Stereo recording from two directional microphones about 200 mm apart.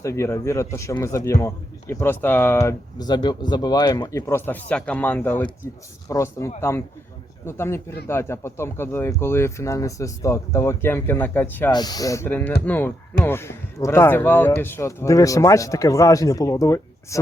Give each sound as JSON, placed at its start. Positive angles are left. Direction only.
{"t": 0.0, "sound": "a man's voice", "side_deg": 15}
{"t": 11.7, "sound": "a man's voice", "side_deg": 20}